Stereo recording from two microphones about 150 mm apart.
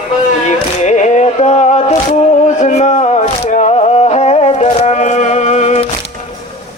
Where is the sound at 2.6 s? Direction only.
50° left (ahead or behind).